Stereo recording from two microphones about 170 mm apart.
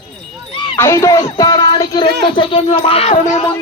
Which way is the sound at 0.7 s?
15° left (ahead or behind).